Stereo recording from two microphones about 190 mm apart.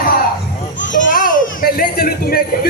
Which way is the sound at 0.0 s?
50° left (ahead or behind).